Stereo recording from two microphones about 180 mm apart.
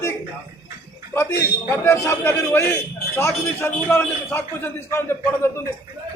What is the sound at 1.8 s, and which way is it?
A man's voice, 15° left (ahead or behind).